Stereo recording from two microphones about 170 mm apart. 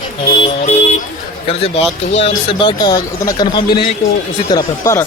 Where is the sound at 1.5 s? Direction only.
35° left (ahead or behind); by 5.1 s 15° left (ahead or behind).